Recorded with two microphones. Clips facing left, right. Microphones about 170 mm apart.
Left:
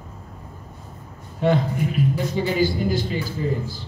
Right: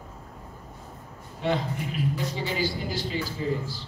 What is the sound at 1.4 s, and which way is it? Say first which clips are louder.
A man's voice: left 7 dB; 50° left (ahead or behind).